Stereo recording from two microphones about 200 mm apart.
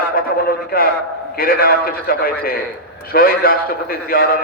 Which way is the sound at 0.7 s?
45° left (ahead or behind).